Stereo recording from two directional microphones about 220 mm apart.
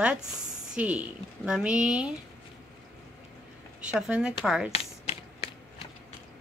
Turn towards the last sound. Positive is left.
turn(degrees=25)  # may be behind; listen again after turning